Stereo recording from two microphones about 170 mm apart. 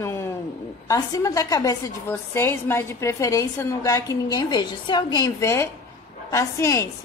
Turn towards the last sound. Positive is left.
turn(degrees=20)  # may be behind; listen again after turning